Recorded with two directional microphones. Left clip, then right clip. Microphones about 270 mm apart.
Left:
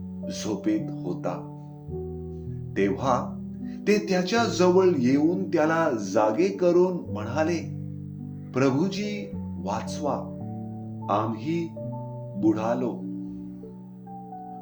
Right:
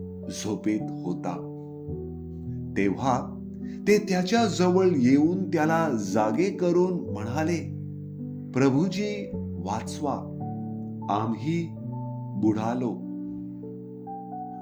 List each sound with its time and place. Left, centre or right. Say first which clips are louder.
0.3 s speech: left 2 dB; right
2.7 s speech: left 1 dB; right